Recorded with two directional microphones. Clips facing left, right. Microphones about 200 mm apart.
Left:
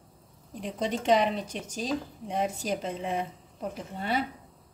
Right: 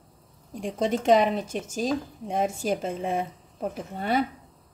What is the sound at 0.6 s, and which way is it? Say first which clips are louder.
Speech: right 5 dB; 45° right (ahead or behind).